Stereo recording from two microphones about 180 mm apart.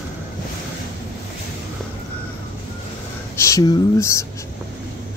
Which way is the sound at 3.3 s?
15° left (ahead or behind).